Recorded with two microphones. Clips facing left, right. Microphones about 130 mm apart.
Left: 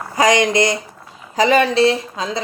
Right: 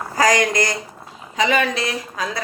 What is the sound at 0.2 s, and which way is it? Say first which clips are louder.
Speech: left 3 dB; 25° left (ahead or behind).